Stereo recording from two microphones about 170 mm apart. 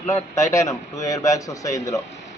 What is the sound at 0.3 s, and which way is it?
A man's voice, 15° left (ahead or behind).